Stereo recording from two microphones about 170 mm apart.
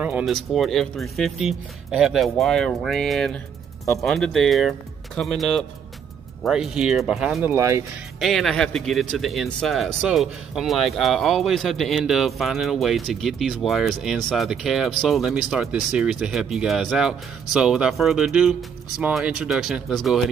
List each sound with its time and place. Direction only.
0.0 s speech: 5° right (ahead or behind)
7.5 s speech: 15° right (ahead or behind)
8.2 s speech: centre (ahead or behind)